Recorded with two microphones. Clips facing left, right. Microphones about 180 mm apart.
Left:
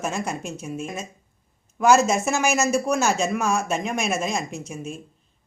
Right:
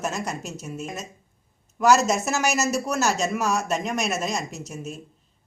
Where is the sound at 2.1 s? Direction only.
5° right (ahead or behind).